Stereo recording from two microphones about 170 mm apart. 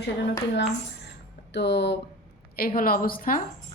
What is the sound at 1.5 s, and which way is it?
Speech, 90° left.